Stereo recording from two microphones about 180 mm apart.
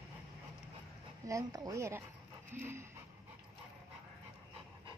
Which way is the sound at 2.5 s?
10° right (ahead or behind).